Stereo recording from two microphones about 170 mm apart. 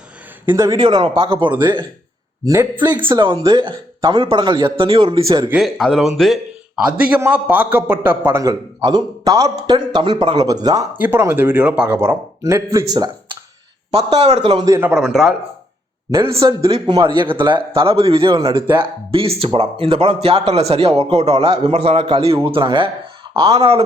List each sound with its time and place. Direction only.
0.4 s a man's voice: 15° right (ahead or behind)
2.4 s a man's voice: 15° right (ahead or behind)
5.5 s a man's voice: centre (ahead or behind); by 10.8 s 20° right (ahead or behind)
10.9 s speech: 10° right (ahead or behind)
14.2 s a man's voice: 40° right (ahead or behind)
14.5 s a man's voice: 20° right (ahead or behind)
14.8 s speech: 5° right (ahead or behind)
16.4 s a man's voice: 20° right (ahead or behind); by 23.8 s 35° right (ahead or behind)